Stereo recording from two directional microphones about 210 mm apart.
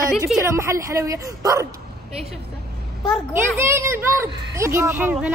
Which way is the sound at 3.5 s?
10° right (ahead or behind).